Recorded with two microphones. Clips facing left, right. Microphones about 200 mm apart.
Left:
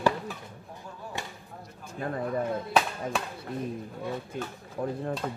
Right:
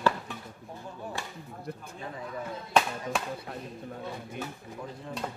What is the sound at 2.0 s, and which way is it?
Speech, 55° left (ahead or behind).